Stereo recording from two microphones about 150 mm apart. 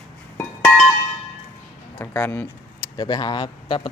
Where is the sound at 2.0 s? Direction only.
15° left (ahead or behind).